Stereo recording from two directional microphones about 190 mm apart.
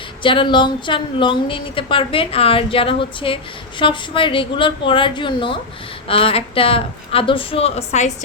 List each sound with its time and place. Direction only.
0.2 s a woman's voice: 25° left (ahead or behind)